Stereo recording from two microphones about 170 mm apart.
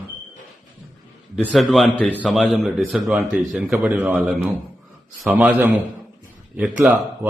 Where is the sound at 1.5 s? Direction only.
Centre (ahead or behind).